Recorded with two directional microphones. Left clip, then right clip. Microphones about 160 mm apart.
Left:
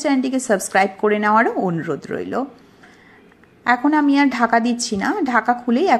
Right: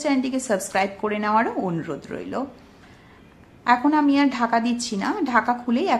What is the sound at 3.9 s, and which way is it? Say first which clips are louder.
A woman's voice: left 3 dB; 25° left (ahead or behind).